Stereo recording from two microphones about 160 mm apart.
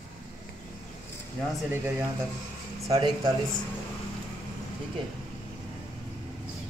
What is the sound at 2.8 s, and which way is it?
Speech, 25° right (ahead or behind).